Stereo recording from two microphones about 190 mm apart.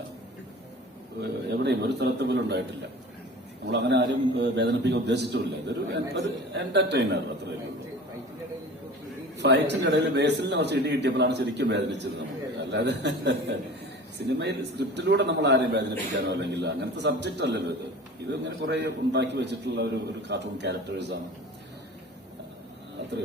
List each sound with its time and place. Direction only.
1.2 s a man's voice: 65° right (ahead or behind)
3.7 s a man's voice: 65° right (ahead or behind)
9.4 s a man's voice: 65° right (ahead or behind)